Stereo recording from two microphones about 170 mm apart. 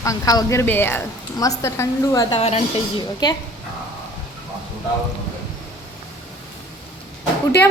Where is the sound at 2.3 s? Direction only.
35° left (ahead or behind).